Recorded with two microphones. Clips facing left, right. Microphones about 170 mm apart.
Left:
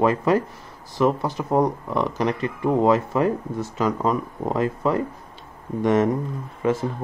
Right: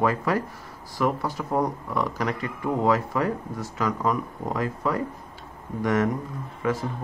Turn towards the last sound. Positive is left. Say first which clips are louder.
# left 4 dB
turn(degrees=25)  # may be behind; listen again after turning